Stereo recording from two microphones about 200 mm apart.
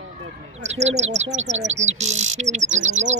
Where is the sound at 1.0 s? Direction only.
35° right (ahead or behind).